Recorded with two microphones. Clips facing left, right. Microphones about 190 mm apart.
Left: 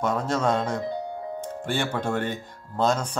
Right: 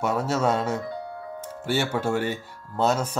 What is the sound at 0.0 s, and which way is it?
Speech, 5° right (ahead or behind).